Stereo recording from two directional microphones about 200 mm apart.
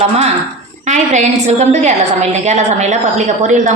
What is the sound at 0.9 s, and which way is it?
A woman's voice, 35° right (ahead or behind).